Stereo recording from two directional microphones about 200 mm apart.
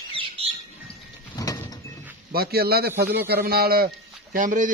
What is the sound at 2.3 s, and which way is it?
A man's voice, 50° right (ahead or behind).